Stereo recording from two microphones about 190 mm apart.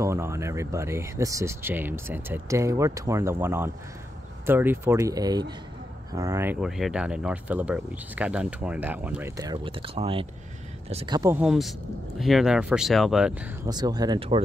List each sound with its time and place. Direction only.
0.0 s speech: 15° right (ahead or behind)
9.4 s speech: 25° right (ahead or behind)
11.3 s speech: centre (ahead or behind)
13.7 s speech: 20° right (ahead or behind)